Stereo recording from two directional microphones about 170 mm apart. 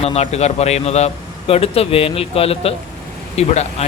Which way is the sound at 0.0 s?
40° left (ahead or behind).